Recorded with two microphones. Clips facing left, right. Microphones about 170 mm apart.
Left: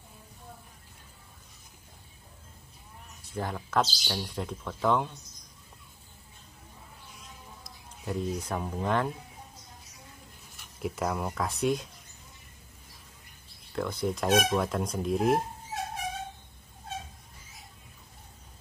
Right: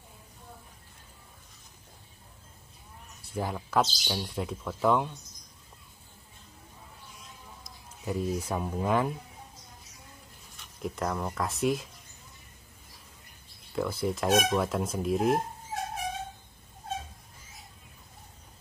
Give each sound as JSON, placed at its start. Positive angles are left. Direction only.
{"t": 3.3, "sound": "speech", "side_deg": -10}
{"t": 7.6, "sound": "speech", "side_deg": -5}
{"t": 10.6, "sound": "speech", "side_deg": 5}
{"t": 13.7, "sound": "speech", "side_deg": -5}